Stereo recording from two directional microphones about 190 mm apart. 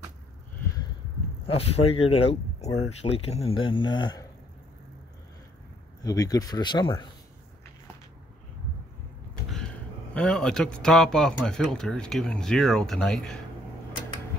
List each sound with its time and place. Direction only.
1.5 s speech: 30° left (ahead or behind)
6.0 s speech: 20° left (ahead or behind)
10.1 s speech: 5° left (ahead or behind)